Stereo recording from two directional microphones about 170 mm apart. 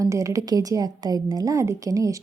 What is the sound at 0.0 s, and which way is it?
A woman's voice, 20° right (ahead or behind).